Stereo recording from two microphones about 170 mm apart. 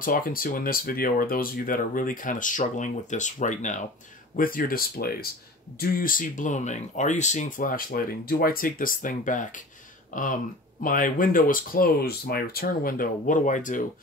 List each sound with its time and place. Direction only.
0.0 s speech: 55° left (ahead or behind)